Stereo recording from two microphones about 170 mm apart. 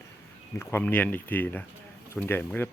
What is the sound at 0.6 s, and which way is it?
Speech, 10° left (ahead or behind).